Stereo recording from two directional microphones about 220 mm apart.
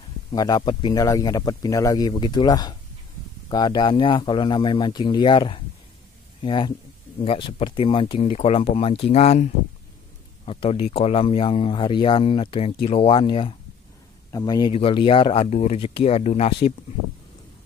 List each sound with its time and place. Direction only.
0.3 s speech: 20° left (ahead or behind)